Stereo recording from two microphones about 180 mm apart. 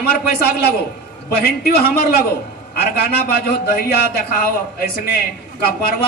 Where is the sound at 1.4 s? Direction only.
60° left (ahead or behind).